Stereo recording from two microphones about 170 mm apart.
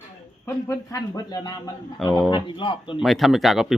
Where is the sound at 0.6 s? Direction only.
20° left (ahead or behind).